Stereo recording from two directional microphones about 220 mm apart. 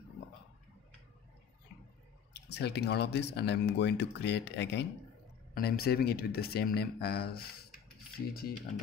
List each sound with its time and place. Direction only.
2.5 s speech: 50° left (ahead or behind)